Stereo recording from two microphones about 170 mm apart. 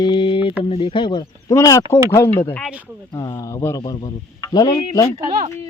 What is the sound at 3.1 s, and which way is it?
Speech, 25° left (ahead or behind).